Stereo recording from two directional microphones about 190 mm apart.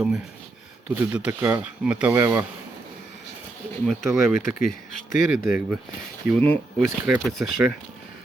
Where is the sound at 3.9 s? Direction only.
Centre (ahead or behind).